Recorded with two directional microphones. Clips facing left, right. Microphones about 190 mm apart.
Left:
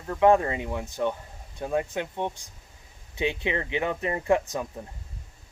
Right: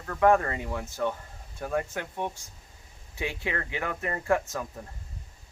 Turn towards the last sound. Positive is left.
turn(degrees=15)  # may be behind; listen again after turning